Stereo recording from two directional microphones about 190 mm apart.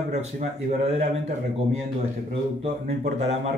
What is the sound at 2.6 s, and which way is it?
Speech, 35° right (ahead or behind).